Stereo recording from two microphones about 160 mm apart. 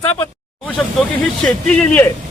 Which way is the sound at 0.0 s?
35° left (ahead or behind).